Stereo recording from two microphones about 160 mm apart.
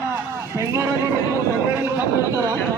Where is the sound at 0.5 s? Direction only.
20° right (ahead or behind).